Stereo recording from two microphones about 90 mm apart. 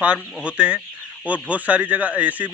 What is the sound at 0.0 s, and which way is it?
A man's voice, 10° right (ahead or behind).